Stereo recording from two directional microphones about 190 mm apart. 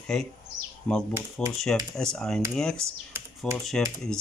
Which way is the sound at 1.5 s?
Centre (ahead or behind).